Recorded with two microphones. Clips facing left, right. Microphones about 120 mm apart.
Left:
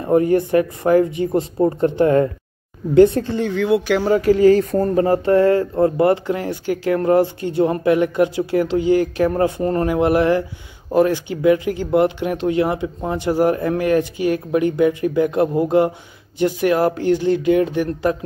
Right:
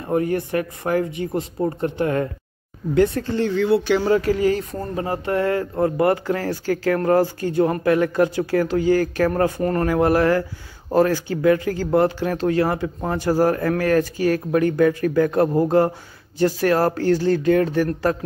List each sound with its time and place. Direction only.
0.0 s speech: 25° left (ahead or behind)
3.5 s speech: 15° left (ahead or behind)
4.3 s speech: 35° left (ahead or behind); by 17.9 s 20° left (ahead or behind)